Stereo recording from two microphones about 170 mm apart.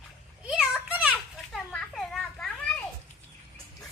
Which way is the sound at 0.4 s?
5° right (ahead or behind).